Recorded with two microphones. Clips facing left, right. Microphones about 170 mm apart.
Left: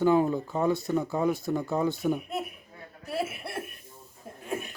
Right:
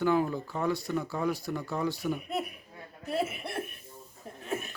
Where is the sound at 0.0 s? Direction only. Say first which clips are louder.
Left 4 dB; 20° left (ahead or behind).